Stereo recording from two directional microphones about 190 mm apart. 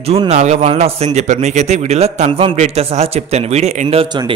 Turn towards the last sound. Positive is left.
turn(degrees=-25)  # may be behind; listen again after turning